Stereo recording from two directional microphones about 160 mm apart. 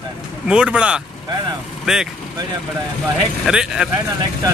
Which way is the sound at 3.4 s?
5° right (ahead or behind).